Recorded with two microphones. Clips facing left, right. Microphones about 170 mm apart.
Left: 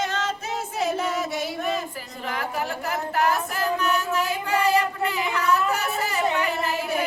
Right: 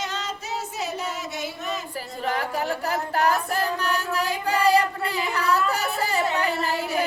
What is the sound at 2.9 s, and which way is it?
Female singing, 35° right (ahead or behind).